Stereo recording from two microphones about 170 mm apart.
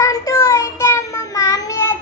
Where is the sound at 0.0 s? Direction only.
20° left (ahead or behind).